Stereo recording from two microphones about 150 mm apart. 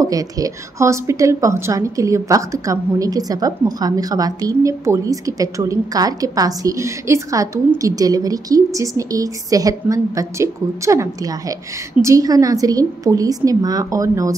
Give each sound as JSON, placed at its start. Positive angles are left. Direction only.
{"t": 0.0, "sound": "a woman's voice", "side_deg": -25}